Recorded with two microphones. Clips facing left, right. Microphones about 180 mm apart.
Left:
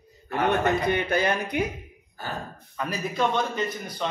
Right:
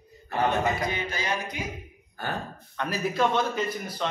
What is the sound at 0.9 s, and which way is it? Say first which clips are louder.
Speech: left 7 dB; 60° left (ahead or behind).